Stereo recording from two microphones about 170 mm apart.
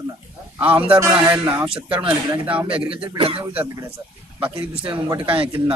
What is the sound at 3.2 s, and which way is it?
Speech, 35° right (ahead or behind).